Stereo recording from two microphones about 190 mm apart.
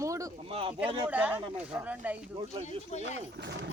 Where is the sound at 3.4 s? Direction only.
65° right (ahead or behind).